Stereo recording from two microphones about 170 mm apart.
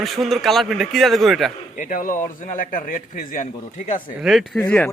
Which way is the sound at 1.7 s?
50° left (ahead or behind).